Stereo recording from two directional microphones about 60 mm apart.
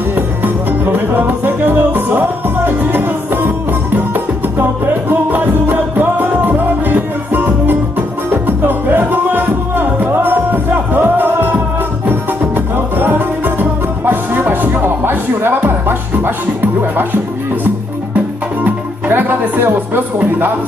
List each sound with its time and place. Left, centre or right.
0.1 s music: right
12.7 s music: right
18.6 s music: right
20.2 s speech: right